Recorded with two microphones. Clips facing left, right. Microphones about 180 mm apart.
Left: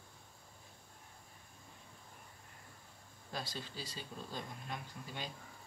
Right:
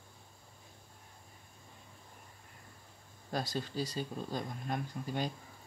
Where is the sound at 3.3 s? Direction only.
45° right (ahead or behind).